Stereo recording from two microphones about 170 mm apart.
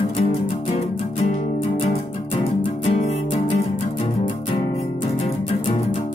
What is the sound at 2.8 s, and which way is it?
Music, 40° left (ahead or behind).